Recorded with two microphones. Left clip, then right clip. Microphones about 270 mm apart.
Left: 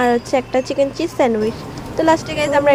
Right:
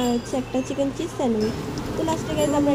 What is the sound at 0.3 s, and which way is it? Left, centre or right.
Speech, left.